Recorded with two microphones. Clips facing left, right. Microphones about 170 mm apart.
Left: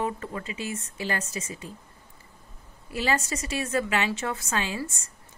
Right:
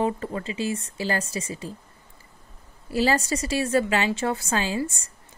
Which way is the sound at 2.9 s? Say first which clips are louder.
Right 5 dB; 35° right (ahead or behind).